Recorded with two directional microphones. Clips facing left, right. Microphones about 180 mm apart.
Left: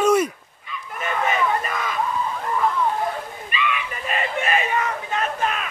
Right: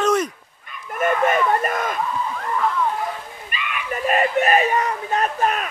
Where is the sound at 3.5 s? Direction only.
50° right (ahead or behind).